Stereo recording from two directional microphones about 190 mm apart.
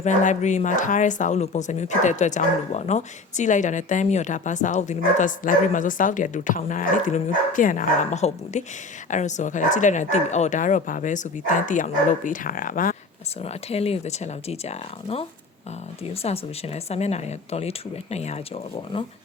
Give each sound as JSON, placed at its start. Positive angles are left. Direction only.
{"t": 0.0, "sound": "speech", "side_deg": 40}
{"t": 13.4, "sound": "speech", "side_deg": 35}